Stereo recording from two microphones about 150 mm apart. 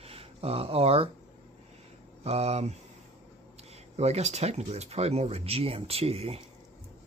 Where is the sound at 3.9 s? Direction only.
45° right (ahead or behind).